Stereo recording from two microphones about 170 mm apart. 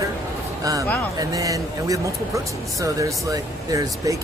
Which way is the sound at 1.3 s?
20° right (ahead or behind).